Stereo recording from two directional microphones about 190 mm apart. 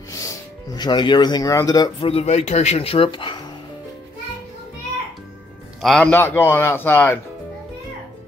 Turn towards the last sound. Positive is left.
turn(degrees=10)  # may be behind; listen again after turning